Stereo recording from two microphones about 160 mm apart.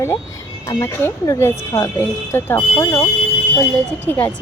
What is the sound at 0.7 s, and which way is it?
Speech, 15° left (ahead or behind).